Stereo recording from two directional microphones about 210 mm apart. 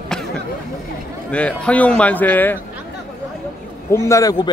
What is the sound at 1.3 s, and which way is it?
A man's voice, 5° left (ahead or behind).